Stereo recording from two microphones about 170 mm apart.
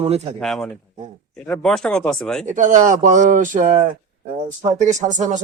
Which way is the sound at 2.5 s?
50° right (ahead or behind).